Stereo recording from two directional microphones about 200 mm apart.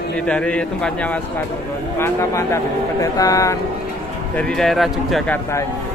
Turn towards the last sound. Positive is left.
turn(degrees=0)  # may be behind; listen again after turning